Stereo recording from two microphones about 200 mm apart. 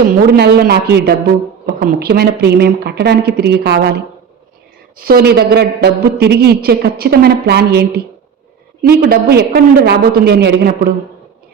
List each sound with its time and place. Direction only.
0.3 s a woman's voice: 55° right (ahead or behind)